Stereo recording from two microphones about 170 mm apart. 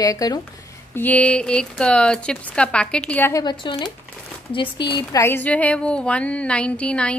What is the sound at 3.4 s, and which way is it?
Speech, 25° left (ahead or behind).